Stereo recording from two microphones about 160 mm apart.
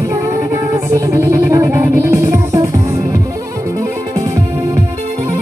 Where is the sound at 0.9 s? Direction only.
20° right (ahead or behind).